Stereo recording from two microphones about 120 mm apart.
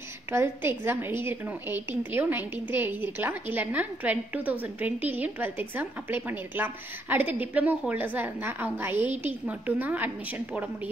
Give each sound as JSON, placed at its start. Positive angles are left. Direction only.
{"t": 0.3, "sound": "a woman's voice", "side_deg": -20}